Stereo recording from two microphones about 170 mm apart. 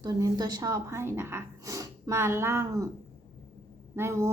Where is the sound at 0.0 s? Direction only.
25° right (ahead or behind).